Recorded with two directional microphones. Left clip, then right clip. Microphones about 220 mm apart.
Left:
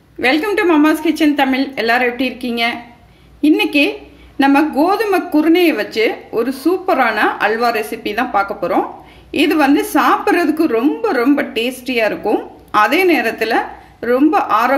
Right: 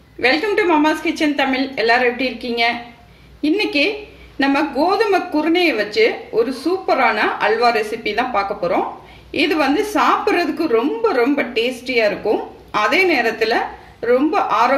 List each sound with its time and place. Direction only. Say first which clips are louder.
0.2 s a woman's voice: left 2 dB; 40° left (ahead or behind)